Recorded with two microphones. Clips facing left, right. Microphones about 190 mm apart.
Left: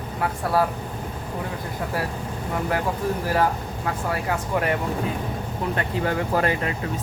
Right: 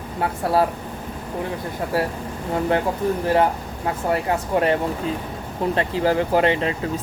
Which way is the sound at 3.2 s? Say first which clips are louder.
Right 4 dB; 25° right (ahead or behind).